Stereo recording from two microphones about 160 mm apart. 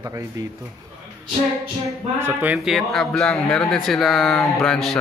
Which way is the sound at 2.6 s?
Centre (ahead or behind).